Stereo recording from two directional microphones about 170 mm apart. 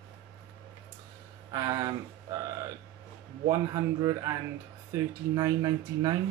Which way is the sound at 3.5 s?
20° right (ahead or behind).